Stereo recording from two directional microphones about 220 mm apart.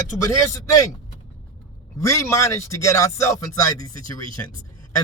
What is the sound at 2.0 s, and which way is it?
Speech, 15° left (ahead or behind).